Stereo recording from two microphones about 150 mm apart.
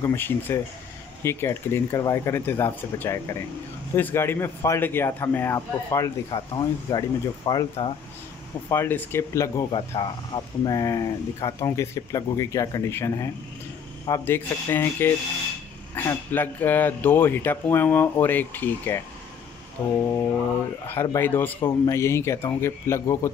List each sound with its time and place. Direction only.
0.0 s speech: 15° left (ahead or behind)
8.6 s speech: 15° left (ahead or behind)
9.7 s speech: 30° left (ahead or behind)